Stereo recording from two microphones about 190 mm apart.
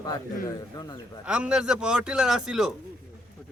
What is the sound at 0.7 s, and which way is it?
Speech, 20° left (ahead or behind).